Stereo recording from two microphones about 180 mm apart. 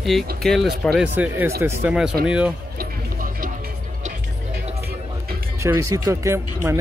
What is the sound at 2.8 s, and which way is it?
Music, 50° right (ahead or behind).